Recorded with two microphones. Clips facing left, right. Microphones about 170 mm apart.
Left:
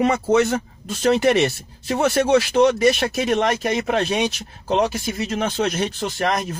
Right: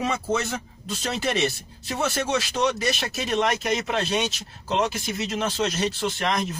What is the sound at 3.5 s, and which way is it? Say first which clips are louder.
Speech: left 4 dB; 50° left (ahead or behind).